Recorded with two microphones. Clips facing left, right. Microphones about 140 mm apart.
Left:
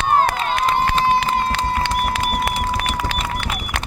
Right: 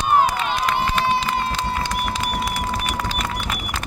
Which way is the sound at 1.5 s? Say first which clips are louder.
Left 4 dB; 60° left (ahead or behind).